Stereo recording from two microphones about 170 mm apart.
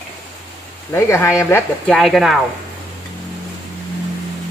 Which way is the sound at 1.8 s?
Centre (ahead or behind).